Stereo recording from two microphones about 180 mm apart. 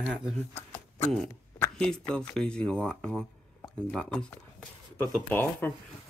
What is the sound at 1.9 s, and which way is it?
Speech, 5° left (ahead or behind).